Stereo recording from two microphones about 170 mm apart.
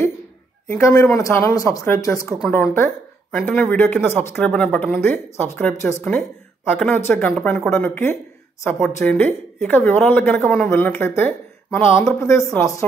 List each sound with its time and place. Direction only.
0.7 s speech: 15° left (ahead or behind)